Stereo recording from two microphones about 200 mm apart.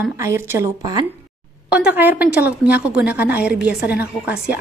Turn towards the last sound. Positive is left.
turn(degrees=-5)  # may be behind; listen again after turning